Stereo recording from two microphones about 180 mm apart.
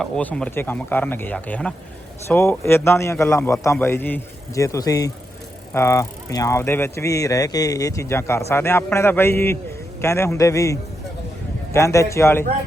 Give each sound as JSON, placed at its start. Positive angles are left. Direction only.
{"t": 0.0, "sound": "speech", "side_deg": 5}